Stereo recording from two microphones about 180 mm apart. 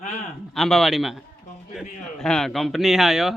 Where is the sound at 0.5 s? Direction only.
Centre (ahead or behind).